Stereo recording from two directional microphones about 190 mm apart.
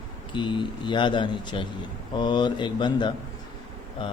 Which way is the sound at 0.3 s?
25° left (ahead or behind).